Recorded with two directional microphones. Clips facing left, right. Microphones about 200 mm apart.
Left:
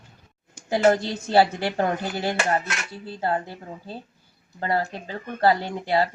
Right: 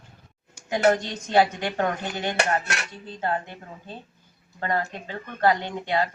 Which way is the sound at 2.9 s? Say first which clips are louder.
Left 3 dB; 10° left (ahead or behind).